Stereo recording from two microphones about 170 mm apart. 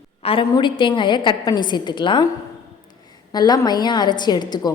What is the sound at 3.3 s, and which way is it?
A woman's voice, 25° left (ahead or behind).